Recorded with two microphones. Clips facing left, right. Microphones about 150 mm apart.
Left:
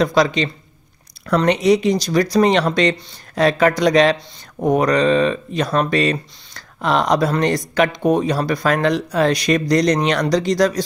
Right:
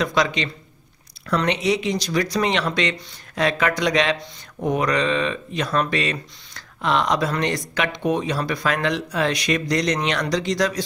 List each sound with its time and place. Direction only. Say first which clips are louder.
0.0 s speech: left 5 dB; 35° left (ahead or behind)